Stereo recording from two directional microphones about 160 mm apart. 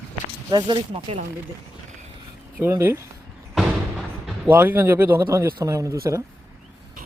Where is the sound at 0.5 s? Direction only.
30° right (ahead or behind).